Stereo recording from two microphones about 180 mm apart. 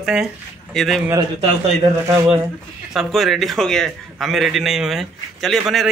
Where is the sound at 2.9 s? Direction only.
Centre (ahead or behind).